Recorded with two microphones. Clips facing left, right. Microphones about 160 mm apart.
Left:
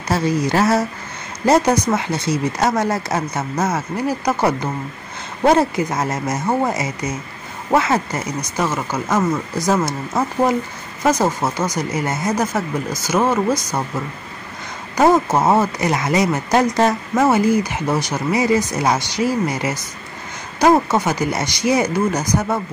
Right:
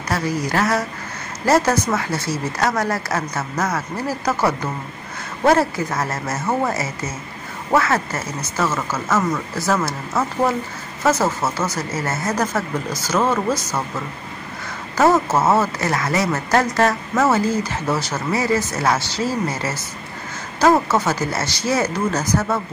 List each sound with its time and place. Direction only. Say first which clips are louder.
0.1 s speech: left 4 dB; 25° left (ahead or behind)
15.0 s speech: left 2 dB; 15° left (ahead or behind)